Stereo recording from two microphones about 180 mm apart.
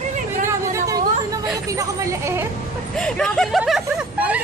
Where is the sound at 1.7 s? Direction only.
15° right (ahead or behind).